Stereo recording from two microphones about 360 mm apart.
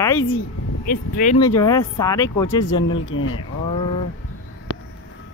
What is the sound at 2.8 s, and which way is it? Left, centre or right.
Speech, left.